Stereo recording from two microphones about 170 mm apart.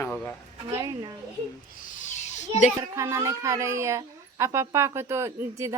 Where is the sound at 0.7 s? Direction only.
20° right (ahead or behind).